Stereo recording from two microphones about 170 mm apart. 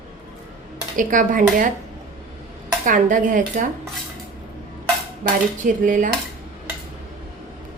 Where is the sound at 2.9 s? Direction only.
50° right (ahead or behind).